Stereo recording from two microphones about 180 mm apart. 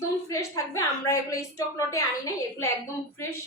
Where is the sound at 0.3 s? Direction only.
20° left (ahead or behind).